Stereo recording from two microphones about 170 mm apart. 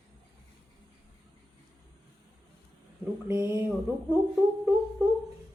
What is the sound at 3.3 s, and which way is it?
Speech, 15° right (ahead or behind).